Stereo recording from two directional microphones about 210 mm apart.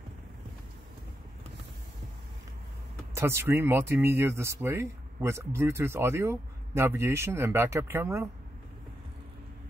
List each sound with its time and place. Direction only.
3.2 s speech: 10° right (ahead or behind)